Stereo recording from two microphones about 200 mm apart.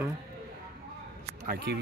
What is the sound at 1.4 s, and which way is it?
Speech, 50° right (ahead or behind).